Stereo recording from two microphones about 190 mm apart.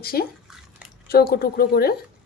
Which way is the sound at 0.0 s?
55° left (ahead or behind).